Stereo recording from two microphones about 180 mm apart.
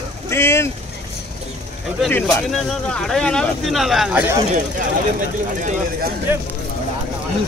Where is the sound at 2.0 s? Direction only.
5° left (ahead or behind).